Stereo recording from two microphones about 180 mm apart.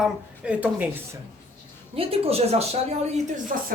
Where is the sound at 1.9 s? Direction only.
30° right (ahead or behind).